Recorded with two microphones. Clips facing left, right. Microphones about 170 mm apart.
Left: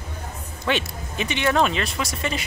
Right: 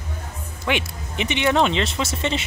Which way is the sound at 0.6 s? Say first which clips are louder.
Even; 15° right (ahead or behind).